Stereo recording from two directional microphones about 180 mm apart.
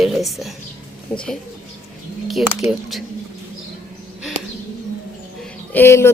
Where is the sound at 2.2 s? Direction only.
Centre (ahead or behind).